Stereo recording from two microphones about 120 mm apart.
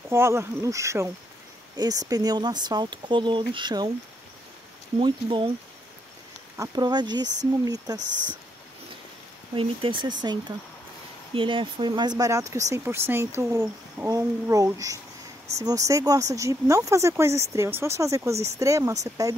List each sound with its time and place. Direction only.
0.1 s speech: 20° right (ahead or behind); by 3.9 s 35° right (ahead or behind)
4.9 s speech: 45° right (ahead or behind)
6.5 s speech: 30° right (ahead or behind)
9.6 s speech: 45° right (ahead or behind)
11.3 s speech: 45° right (ahead or behind); by 19.3 s 25° right (ahead or behind)